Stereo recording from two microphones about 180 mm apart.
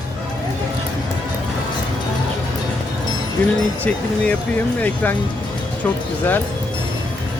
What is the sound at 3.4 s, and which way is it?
Speech, 10° left (ahead or behind).